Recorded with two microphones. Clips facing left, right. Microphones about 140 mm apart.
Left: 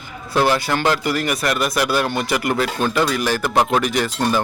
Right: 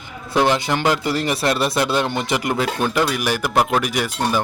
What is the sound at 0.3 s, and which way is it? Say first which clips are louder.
Speech: even; 20° right (ahead or behind).